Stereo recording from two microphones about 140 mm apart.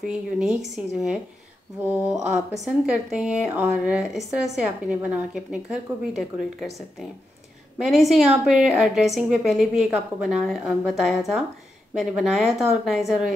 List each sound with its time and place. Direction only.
0.0 s a woman's voice: 5° right (ahead or behind)
1.9 s a woman's voice: 15° right (ahead or behind)